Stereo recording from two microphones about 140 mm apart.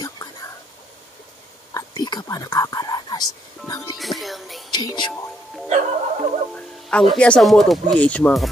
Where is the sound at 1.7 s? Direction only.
30° left (ahead or behind).